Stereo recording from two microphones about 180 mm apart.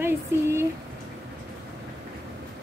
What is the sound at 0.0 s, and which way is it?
Speech, 15° right (ahead or behind).